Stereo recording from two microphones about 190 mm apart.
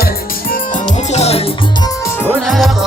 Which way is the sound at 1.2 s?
35° left (ahead or behind).